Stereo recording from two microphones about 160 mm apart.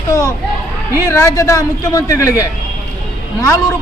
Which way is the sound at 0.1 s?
20° left (ahead or behind).